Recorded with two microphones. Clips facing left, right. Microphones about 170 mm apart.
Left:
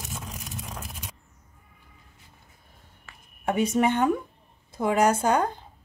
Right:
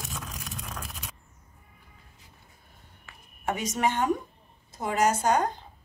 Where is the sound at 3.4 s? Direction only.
60° left (ahead or behind).